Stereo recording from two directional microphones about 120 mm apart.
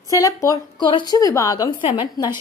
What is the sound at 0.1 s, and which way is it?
A woman's voice, 30° left (ahead or behind).